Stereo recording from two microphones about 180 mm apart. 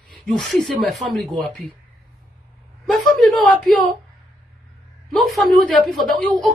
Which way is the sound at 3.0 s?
Centre (ahead or behind).